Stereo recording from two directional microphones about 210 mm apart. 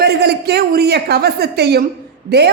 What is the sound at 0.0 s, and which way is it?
A woman's voice, 50° right (ahead or behind).